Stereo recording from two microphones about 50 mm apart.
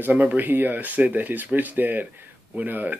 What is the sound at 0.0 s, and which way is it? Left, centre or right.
Speech, right.